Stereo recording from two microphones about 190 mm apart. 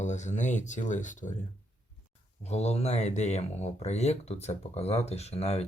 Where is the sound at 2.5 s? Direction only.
35° left (ahead or behind).